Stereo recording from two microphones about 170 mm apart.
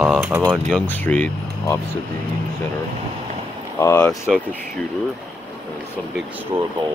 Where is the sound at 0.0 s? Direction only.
5° right (ahead or behind).